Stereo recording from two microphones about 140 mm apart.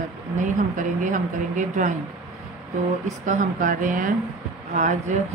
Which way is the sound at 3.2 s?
65° right (ahead or behind).